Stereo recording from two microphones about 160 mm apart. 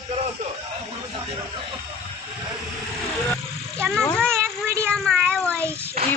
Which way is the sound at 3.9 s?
5° left (ahead or behind).